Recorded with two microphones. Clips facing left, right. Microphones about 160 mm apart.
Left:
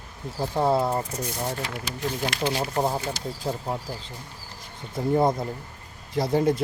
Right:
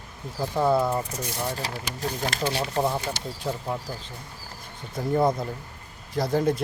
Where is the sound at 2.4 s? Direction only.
20° left (ahead or behind).